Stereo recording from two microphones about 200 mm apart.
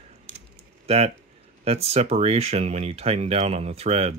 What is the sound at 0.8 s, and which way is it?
Speech, 30° right (ahead or behind).